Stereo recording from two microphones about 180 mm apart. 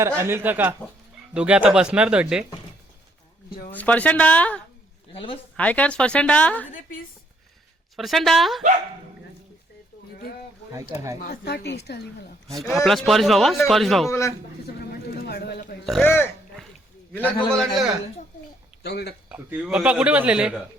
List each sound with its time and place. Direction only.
0.2 s a man's voice: 15° right (ahead or behind)
3.7 s speech: 10° left (ahead or behind)
5.1 s speech: 30° left (ahead or behind)
5.5 s speech: 5° left (ahead or behind)
7.9 s a man's voice: centre (ahead or behind)
10.9 s speech: 15° right (ahead or behind)
11.2 s a woman's voice: 60° left (ahead or behind)
12.5 s a man's voice: centre (ahead or behind)
14.1 s speech: 15° left (ahead or behind)
14.8 s oink: 60° left (ahead or behind)
16.0 s a man's voice: 10° left (ahead or behind)
18.8 s speech: 65° left (ahead or behind)
19.3 s a man's voice: 5° right (ahead or behind)